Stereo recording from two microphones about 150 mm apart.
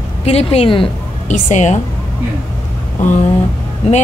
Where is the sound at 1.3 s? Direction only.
50° left (ahead or behind).